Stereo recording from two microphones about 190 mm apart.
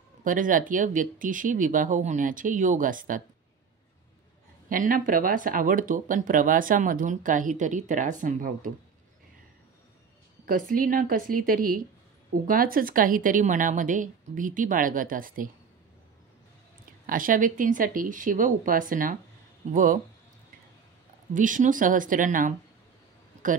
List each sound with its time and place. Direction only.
0.2 s speech: 45° right (ahead or behind)
4.6 s speech: 45° right (ahead or behind)
10.4 s speech: 45° right (ahead or behind)
17.0 s speech: 45° right (ahead or behind)
21.3 s speech: 45° right (ahead or behind)